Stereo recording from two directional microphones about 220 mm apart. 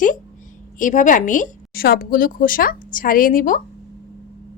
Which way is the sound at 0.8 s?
35° left (ahead or behind).